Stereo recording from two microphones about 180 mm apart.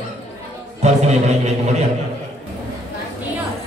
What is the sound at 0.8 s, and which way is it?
Speech, 40° right (ahead or behind).